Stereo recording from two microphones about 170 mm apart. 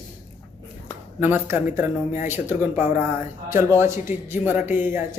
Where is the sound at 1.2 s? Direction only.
15° right (ahead or behind).